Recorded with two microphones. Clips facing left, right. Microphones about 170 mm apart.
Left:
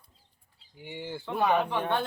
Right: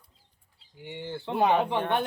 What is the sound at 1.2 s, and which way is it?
Speech, 25° right (ahead or behind).